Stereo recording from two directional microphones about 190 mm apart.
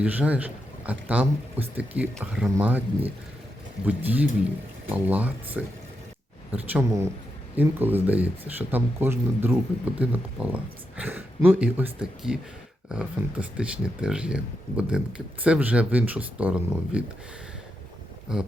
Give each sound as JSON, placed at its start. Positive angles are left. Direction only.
{"t": 0.0, "sound": "speech", "side_deg": -10}
{"t": 18.3, "sound": "speech", "side_deg": -5}